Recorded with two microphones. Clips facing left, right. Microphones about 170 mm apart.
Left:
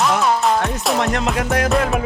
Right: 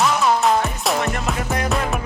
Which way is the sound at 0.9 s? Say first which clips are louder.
Left 4 dB; 75° left (ahead or behind).